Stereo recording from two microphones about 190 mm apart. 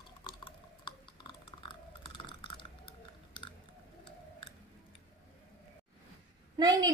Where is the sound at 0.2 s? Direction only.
25° left (ahead or behind).